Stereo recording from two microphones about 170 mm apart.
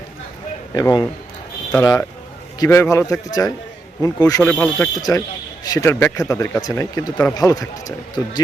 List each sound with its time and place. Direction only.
0.7 s a man's voice: 20° left (ahead or behind)
4.4 s a man's voice: 10° left (ahead or behind)